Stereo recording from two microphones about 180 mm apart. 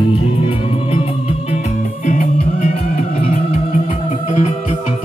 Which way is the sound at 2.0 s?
45° left (ahead or behind).